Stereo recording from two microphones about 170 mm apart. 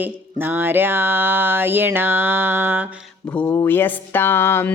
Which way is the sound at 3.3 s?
10° left (ahead or behind).